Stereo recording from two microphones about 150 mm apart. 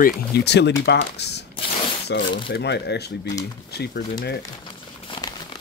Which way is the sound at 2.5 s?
90° left.